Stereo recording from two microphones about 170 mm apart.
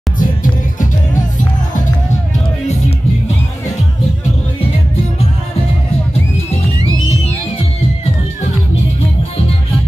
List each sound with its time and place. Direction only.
0.2 s music: 50° left (ahead or behind)